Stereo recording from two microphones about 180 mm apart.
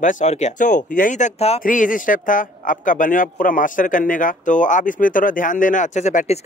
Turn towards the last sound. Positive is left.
turn(degrees=40)  # may be behind; listen again after turning